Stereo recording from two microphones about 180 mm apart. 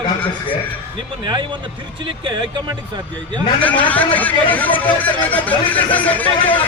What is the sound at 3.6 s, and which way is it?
Speech, 10° left (ahead or behind).